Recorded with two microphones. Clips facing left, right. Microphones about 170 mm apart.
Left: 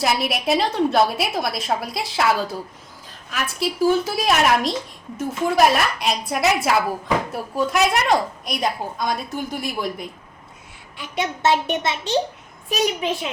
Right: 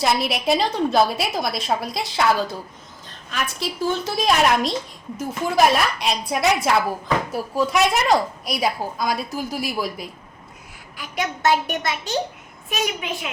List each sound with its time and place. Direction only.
0.0 s a woman's voice: centre (ahead or behind)
3.1 s a sound: 5° left (ahead or behind)
3.6 s a woman's voice: 5° left (ahead or behind)
10.9 s a child's voice: 25° left (ahead or behind)